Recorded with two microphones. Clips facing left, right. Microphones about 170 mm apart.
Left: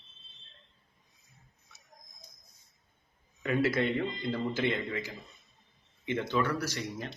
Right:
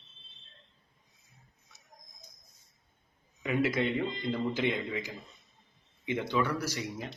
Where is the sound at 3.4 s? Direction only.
15° right (ahead or behind).